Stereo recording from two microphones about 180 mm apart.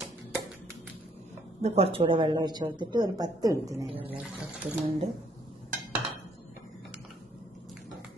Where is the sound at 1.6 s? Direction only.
30° right (ahead or behind).